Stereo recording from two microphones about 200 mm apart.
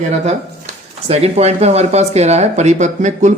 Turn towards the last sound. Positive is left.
turn(degrees=-35)  # may be behind; listen again after turning